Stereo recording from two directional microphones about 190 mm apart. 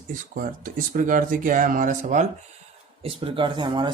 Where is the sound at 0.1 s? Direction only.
45° right (ahead or behind).